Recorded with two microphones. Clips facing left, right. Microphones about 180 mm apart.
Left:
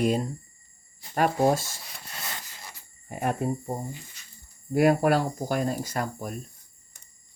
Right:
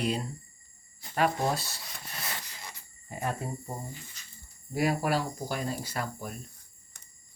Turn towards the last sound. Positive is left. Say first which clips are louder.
# left 5 dB
turn(degrees=45)  # may be behind; listen again after turning